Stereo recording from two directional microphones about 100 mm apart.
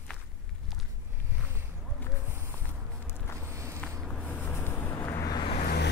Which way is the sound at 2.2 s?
25° right (ahead or behind).